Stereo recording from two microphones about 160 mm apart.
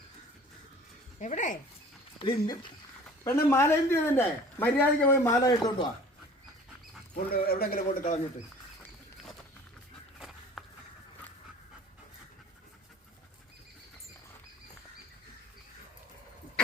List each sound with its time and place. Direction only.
1.2 s speech: 50° left (ahead or behind)
2.1 s speech: 30° left (ahead or behind)
3.2 s a man's voice: 15° left (ahead or behind)
7.4 s a man's voice: 70° left (ahead or behind)
10.2 s walk: centre (ahead or behind)